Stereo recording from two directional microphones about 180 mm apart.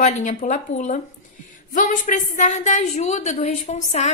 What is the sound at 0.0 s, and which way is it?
A woman's voice, 40° left (ahead or behind).